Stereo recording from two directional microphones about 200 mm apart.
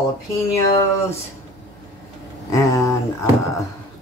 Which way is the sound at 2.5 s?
15° left (ahead or behind).